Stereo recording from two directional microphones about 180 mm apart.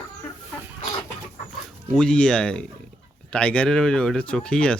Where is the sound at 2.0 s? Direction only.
5° left (ahead or behind).